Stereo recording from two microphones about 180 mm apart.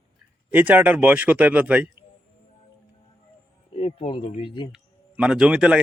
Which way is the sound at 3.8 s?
35° left (ahead or behind).